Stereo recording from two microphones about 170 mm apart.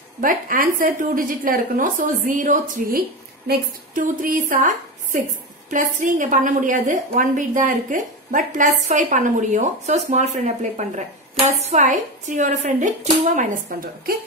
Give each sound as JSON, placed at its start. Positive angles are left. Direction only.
{"t": 0.2, "sound": "a woman's voice", "side_deg": -55}